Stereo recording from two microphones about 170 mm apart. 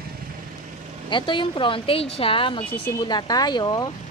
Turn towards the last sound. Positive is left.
turn(degrees=25)  # may be behind; listen again after turning